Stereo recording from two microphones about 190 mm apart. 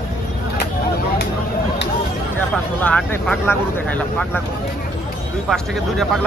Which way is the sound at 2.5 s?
5° left (ahead or behind).